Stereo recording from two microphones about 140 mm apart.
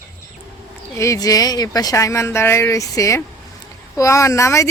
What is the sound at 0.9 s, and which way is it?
Speech, 20° left (ahead or behind).